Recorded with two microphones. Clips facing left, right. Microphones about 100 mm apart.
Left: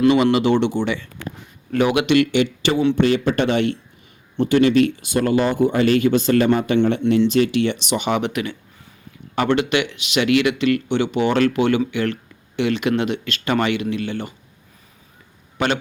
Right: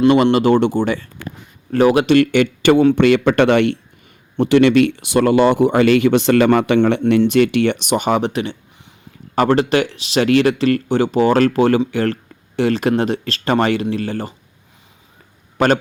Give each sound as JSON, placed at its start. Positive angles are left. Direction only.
{"t": 0.3, "sound": "speech", "side_deg": -45}
{"t": 4.4, "sound": "speech", "side_deg": -80}
{"t": 7.0, "sound": "speech", "side_deg": -55}
{"t": 15.5, "sound": "a man's voice", "side_deg": -40}